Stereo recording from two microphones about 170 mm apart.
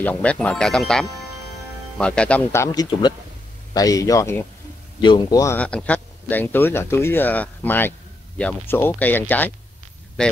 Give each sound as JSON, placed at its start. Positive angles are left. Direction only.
{"t": 0.0, "sound": "a man's voice", "side_deg": 10}
{"t": 5.6, "sound": "speech", "side_deg": 5}